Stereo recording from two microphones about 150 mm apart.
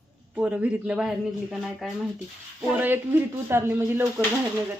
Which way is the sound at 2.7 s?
15° right (ahead or behind).